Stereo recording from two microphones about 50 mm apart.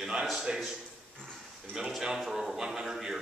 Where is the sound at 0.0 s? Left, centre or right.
Centre.